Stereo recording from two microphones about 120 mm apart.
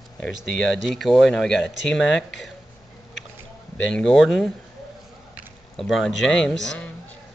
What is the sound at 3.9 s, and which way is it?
Speech, 5° left (ahead or behind).